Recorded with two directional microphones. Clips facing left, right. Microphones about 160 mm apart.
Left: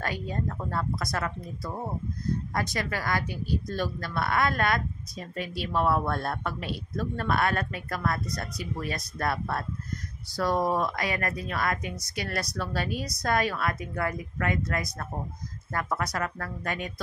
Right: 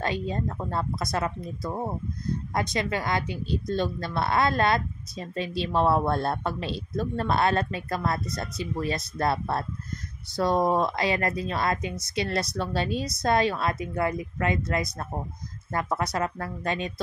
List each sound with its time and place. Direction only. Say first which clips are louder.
0.0 s speech: right 3 dB; 25° right (ahead or behind)